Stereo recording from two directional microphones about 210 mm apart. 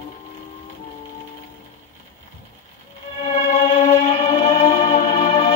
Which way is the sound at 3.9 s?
25° left (ahead or behind).